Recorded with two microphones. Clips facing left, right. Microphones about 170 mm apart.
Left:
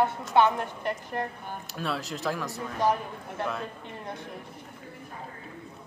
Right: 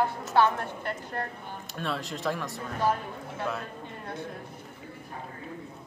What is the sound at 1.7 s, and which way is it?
Speech, centre (ahead or behind).